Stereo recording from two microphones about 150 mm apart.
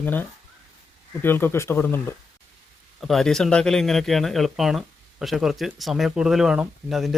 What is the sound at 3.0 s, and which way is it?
Speech, centre (ahead or behind).